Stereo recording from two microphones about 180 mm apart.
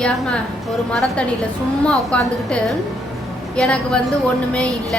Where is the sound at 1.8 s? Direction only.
5° left (ahead or behind).